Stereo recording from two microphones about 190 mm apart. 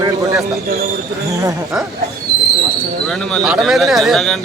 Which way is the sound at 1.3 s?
15° right (ahead or behind).